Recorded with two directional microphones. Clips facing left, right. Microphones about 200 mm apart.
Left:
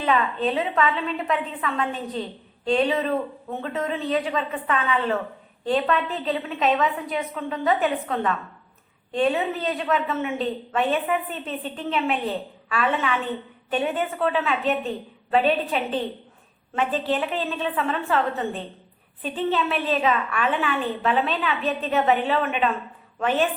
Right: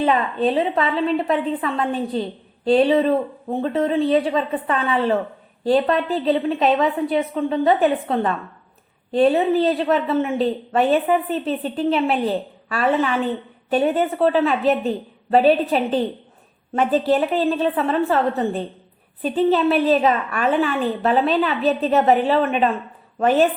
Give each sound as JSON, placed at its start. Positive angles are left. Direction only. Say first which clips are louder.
{"t": 0.0, "sound": "speech", "louder": "right 4 dB", "side_deg": -35}